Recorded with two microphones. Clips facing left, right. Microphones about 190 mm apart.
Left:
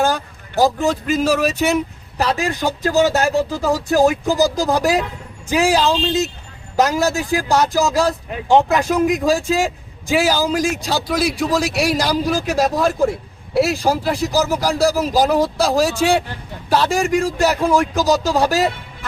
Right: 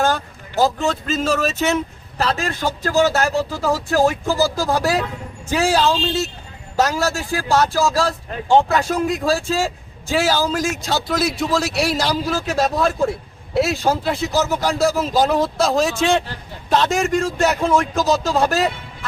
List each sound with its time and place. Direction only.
0.0 s a man's voice: 15° left (ahead or behind)